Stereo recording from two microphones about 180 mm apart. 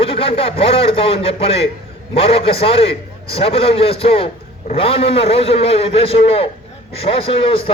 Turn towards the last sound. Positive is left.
turn(degrees=30)  # may be behind; listen again after turning